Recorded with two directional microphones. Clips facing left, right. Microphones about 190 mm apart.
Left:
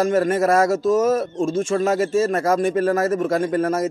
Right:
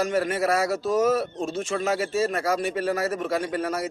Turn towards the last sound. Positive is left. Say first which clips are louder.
# left 7 dB
turn(degrees=45)  # may be behind; listen again after turning